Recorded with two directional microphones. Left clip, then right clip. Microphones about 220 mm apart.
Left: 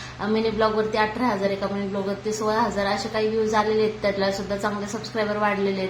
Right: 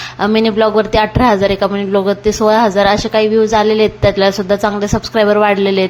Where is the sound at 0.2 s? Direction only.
40° right (ahead or behind).